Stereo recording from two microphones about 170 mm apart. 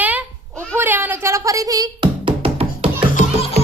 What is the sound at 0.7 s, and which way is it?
Speech, 10° right (ahead or behind).